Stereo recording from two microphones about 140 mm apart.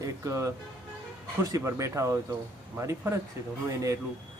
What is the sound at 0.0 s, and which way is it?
Speech, 20° right (ahead or behind).